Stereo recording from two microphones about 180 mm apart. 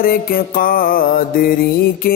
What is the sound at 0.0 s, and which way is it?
Music, 50° left (ahead or behind).